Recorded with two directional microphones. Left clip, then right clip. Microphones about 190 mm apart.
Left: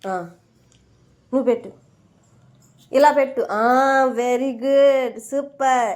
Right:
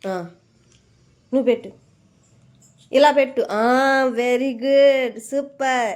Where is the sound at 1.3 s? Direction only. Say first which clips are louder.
Right 1 dB; 25° right (ahead or behind).